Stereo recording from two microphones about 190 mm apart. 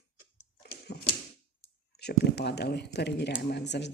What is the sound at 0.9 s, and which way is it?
Typewriter, 60° left (ahead or behind).